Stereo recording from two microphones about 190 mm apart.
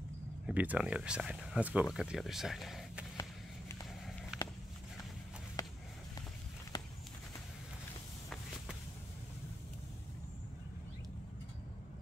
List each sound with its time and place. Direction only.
0.5 s speech: 5° right (ahead or behind)
3.2 s a sound: 20° left (ahead or behind)
4.3 s walk: 5° right (ahead or behind)